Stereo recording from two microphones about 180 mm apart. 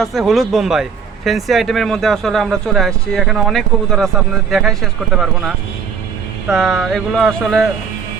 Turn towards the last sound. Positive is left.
turn(degrees=5)  # may be behind; listen again after turning